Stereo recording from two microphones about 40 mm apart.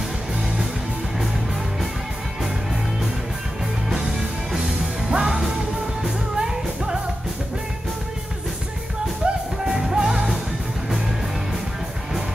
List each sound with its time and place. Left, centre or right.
5.1 s music: centre
9.2 s music: right
9.8 s music: centre